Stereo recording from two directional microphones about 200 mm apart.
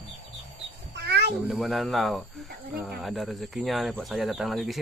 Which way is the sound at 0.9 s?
55° right (ahead or behind).